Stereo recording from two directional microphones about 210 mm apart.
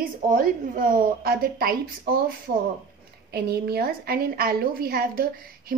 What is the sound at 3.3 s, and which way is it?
A woman's voice, 45° right (ahead or behind).